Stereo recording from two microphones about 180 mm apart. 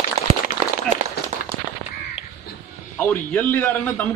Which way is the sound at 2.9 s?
10° left (ahead or behind).